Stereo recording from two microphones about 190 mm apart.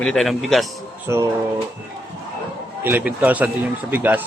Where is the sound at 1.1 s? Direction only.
15° right (ahead or behind).